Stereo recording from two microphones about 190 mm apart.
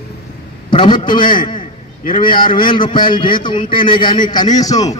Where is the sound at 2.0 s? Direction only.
45° left (ahead or behind).